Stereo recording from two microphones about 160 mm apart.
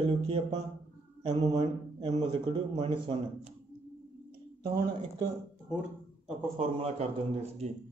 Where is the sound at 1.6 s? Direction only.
30° right (ahead or behind).